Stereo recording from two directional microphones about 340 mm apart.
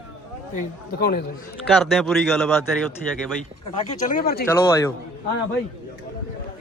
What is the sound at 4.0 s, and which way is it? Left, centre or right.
Speech, left.